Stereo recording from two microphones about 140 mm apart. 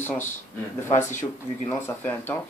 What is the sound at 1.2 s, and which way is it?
Speech, 15° left (ahead or behind).